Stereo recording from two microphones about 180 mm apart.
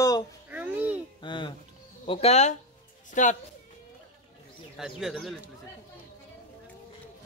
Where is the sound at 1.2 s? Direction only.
25° left (ahead or behind); by 3.4 s 45° left (ahead or behind).